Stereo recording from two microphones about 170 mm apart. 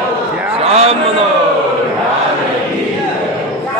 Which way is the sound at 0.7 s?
35° right (ahead or behind).